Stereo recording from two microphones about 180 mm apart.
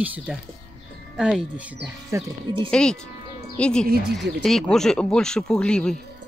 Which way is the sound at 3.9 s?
65° right (ahead or behind).